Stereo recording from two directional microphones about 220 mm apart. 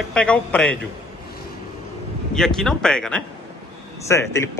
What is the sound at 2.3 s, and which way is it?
A man's voice, centre (ahead or behind).